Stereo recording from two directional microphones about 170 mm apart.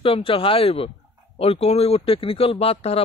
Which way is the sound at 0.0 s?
35° left (ahead or behind).